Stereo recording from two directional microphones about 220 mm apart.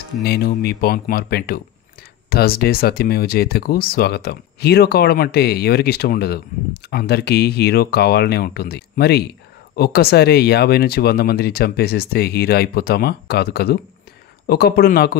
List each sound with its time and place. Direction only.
0.2 s speech: 45° left (ahead or behind)